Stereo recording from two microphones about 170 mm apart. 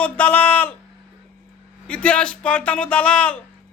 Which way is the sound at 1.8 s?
5° left (ahead or behind).